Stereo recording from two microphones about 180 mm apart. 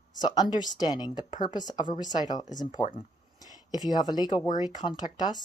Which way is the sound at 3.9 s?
20° left (ahead or behind).